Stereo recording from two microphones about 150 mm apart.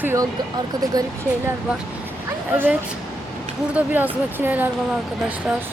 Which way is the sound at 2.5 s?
10° right (ahead or behind).